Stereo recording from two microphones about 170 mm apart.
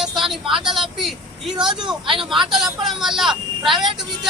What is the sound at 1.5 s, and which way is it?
Speech, 25° right (ahead or behind).